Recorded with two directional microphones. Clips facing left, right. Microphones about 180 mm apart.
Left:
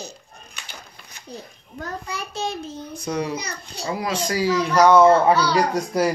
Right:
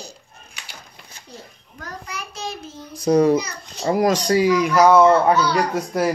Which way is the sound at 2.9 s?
35° right (ahead or behind).